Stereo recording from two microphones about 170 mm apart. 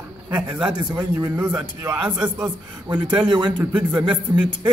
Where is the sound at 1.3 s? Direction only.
15° right (ahead or behind).